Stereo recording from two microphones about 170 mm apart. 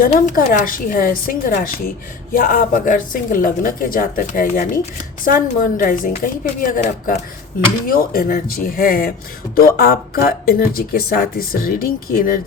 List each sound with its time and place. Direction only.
0.0 s speech: 55° left (ahead or behind)